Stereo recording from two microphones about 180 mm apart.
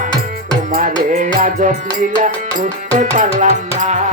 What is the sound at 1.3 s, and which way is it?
Music, 50° right (ahead or behind).